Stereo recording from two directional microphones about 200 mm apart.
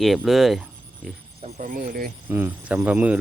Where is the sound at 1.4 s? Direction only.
35° right (ahead or behind).